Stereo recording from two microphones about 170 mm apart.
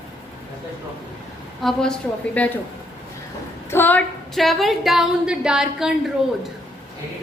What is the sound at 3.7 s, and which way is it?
A woman's voice, 10° left (ahead or behind).